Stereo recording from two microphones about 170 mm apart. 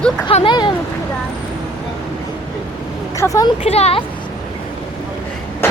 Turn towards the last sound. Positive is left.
turn(degrees=15)  # may be behind; listen again after turning